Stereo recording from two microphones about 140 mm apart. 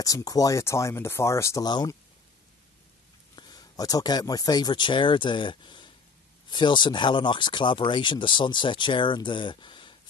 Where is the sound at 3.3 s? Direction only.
30° left (ahead or behind).